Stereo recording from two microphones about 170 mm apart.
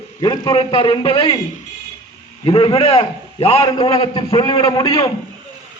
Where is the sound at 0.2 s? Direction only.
25° left (ahead or behind).